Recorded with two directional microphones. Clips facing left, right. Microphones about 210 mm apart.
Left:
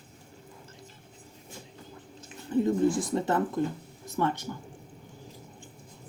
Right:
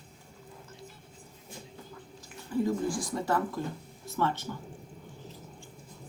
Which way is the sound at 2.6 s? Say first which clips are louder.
Left 5 dB; 20° left (ahead or behind).